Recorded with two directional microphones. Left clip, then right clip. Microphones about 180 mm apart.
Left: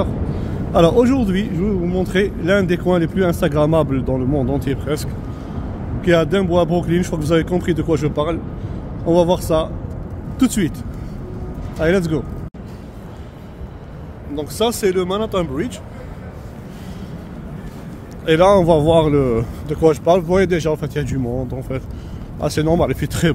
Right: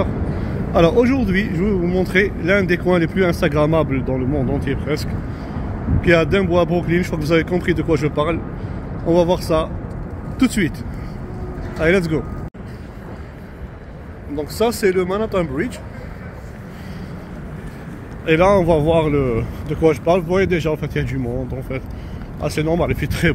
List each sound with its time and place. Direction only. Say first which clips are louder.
0.7 s speech: left 1 dB; 20° left (ahead or behind)
1.5 s speech: right 1 dB; centre (ahead or behind)
2.0 s speech: even; 20° left (ahead or behind)
11.8 s speech: right 1 dB; 15° left (ahead or behind)
14.3 s speech: even; 5° left (ahead or behind)
18.2 s speech: left 2 dB; 30° left (ahead or behind)
22.4 s speech: left 2 dB; 35° left (ahead or behind)